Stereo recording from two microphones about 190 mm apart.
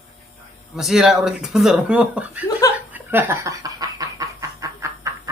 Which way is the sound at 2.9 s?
10° right (ahead or behind).